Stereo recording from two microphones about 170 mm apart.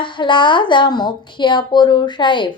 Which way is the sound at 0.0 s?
30° left (ahead or behind).